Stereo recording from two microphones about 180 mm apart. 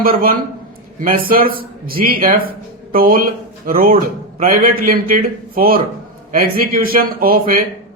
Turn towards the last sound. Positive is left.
turn(degrees=-55)  # may be behind; listen again after turning